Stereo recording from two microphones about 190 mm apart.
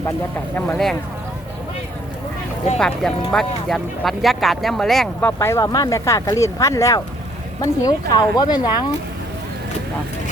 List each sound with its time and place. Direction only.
2.7 s speech: 5° left (ahead or behind)
5.4 s speech: 15° left (ahead or behind)